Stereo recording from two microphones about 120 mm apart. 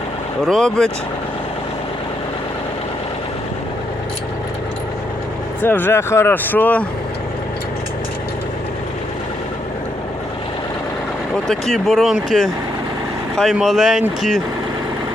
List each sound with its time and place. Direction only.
0.4 s speech: 5° left (ahead or behind)
5.6 s speech: 20° left (ahead or behind)
11.7 s speech: centre (ahead or behind)